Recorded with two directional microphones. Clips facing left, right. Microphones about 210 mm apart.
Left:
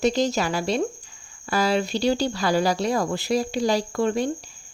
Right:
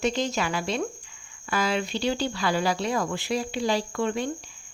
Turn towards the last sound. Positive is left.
turn(degrees=40)  # may be behind; listen again after turning